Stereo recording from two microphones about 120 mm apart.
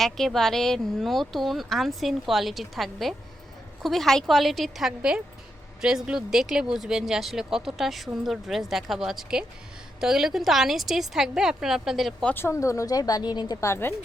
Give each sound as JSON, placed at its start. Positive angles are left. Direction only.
{"t": 0.0, "sound": "speech", "side_deg": 0}
{"t": 12.3, "sound": "speech", "side_deg": 20}